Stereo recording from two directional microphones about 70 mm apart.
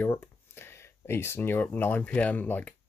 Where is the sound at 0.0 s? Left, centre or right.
Left.